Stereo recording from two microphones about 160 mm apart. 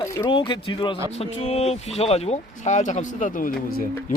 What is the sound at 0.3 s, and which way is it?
Speech, 30° left (ahead or behind).